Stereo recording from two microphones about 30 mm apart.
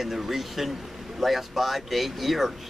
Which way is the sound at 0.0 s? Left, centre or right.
Centre.